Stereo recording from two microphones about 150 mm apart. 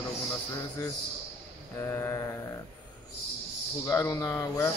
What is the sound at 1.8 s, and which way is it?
Speech, 20° left (ahead or behind).